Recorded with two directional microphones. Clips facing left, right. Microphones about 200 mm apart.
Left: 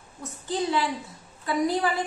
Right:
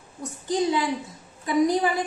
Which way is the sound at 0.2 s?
15° right (ahead or behind).